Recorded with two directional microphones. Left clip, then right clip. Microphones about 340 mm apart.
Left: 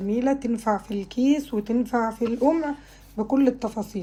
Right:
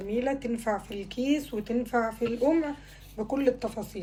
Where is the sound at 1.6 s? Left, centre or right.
Left.